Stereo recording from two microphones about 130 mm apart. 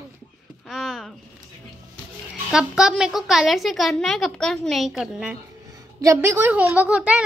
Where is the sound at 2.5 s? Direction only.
5° right (ahead or behind).